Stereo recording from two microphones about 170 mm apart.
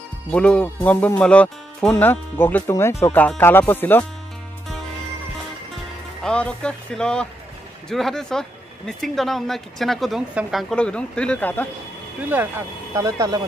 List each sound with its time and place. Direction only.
0.3 s speech: 5° left (ahead or behind)
6.2 s speech: 5° left (ahead or behind)
12.3 s speech: 10° right (ahead or behind)